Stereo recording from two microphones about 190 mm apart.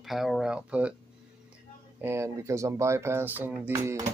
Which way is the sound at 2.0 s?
15° right (ahead or behind).